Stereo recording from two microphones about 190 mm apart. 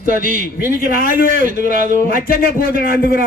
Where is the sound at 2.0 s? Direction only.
50° left (ahead or behind).